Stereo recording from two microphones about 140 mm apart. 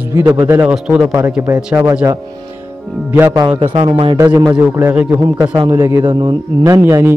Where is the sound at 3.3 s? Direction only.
30° right (ahead or behind).